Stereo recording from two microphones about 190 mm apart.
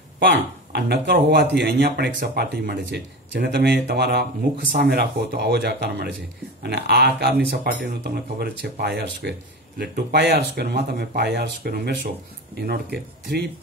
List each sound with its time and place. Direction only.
0.2 s speech: 65° right (ahead or behind)